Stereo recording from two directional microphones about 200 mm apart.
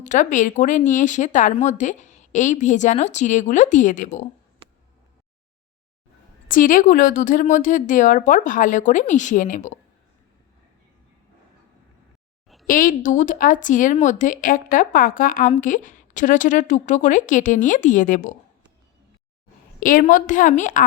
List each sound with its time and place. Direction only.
0.0 s speech: 40° left (ahead or behind)
6.5 s speech: 40° left (ahead or behind)
12.6 s speech: 45° left (ahead or behind)
19.8 s speech: 40° left (ahead or behind)